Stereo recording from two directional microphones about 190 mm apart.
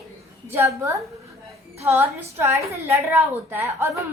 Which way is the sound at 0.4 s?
10° right (ahead or behind).